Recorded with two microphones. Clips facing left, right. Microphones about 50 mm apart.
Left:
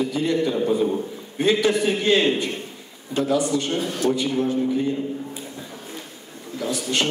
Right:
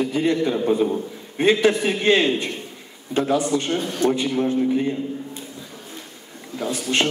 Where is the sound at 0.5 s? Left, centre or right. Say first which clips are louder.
Right 1 dB; right.